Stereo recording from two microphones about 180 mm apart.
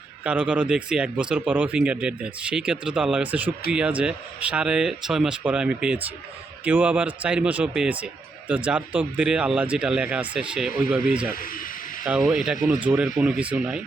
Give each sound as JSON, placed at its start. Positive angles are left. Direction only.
{"t": 0.3, "sound": "speech", "side_deg": -5}
{"t": 12.3, "sound": "speech", "side_deg": -5}